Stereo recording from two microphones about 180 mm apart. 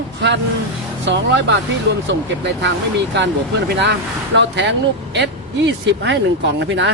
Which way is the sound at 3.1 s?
75° right (ahead or behind).